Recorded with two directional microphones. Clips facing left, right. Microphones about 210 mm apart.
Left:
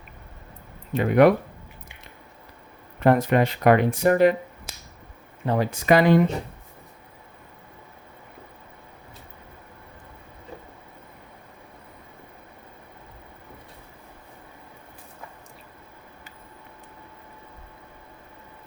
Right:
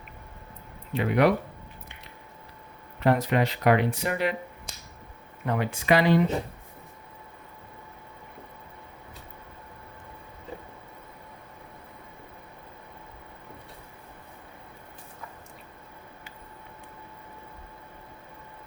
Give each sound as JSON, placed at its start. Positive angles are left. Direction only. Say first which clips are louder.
{"t": 0.9, "sound": "speech", "louder": "left 6 dB", "side_deg": 50}
{"t": 3.0, "sound": "speech", "louder": "left 4 dB", "side_deg": 50}
{"t": 5.5, "sound": "speech", "louder": "left 4 dB", "side_deg": 40}